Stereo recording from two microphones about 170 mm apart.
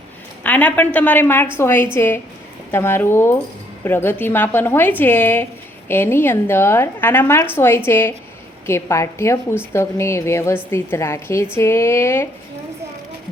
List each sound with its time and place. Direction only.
0.4 s a woman's voice: 10° left (ahead or behind)